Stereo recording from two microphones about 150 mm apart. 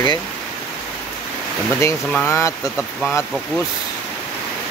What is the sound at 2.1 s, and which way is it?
Speech, 15° left (ahead or behind).